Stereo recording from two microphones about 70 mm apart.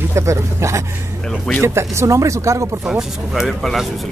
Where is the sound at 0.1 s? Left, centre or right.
Right.